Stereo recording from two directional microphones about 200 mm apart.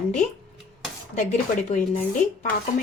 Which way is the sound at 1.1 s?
40° left (ahead or behind).